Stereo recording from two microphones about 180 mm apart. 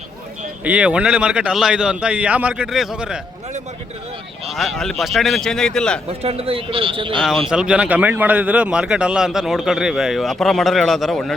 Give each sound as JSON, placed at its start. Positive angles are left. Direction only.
{"t": 0.6, "sound": "a man's voice", "side_deg": -5}
{"t": 4.5, "sound": "a man's voice", "side_deg": 0}
{"t": 6.1, "sound": "speech", "side_deg": -35}
{"t": 7.2, "sound": "a man's voice", "side_deg": 0}